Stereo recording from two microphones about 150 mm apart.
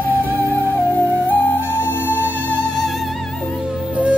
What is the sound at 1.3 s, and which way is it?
Music, 15° left (ahead or behind).